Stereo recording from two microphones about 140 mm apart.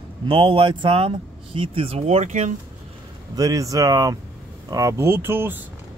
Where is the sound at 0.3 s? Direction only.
35° right (ahead or behind); by 2.5 s 60° right (ahead or behind).